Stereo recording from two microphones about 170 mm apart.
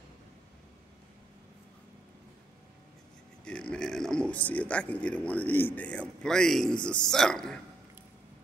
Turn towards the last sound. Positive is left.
turn(degrees=5)  # may be behind; listen again after turning